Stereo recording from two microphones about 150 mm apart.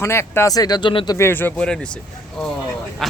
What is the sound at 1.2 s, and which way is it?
Speech, 15° left (ahead or behind).